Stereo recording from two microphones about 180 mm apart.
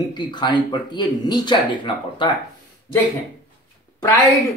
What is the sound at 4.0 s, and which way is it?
Speech, 15° left (ahead or behind).